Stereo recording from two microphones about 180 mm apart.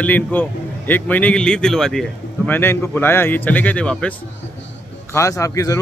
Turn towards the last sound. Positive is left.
turn(degrees=15)  # may be behind; listen again after turning